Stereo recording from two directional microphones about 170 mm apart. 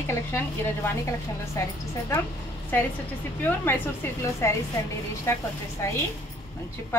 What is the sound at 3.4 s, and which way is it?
A woman's voice, 15° left (ahead or behind).